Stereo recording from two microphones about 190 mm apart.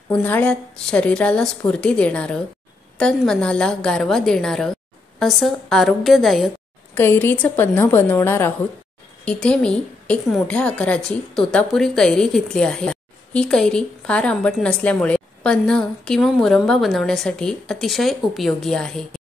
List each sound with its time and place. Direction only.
0.1 s a woman's voice: 10° left (ahead or behind)
6.9 s a woman's voice: 10° left (ahead or behind)